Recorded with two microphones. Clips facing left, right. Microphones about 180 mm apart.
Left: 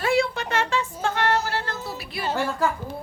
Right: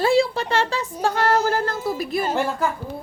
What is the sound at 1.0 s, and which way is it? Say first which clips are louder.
Music: right 6 dB; 40° right (ahead or behind).